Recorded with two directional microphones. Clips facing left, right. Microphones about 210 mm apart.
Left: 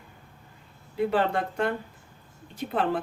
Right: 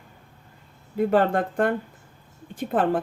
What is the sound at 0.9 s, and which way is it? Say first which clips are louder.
Speech: right 4 dB; 50° right (ahead or behind).